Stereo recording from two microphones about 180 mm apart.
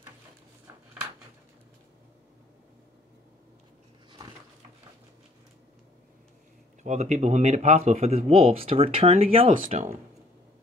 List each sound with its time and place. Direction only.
6.8 s speech: 40° right (ahead or behind)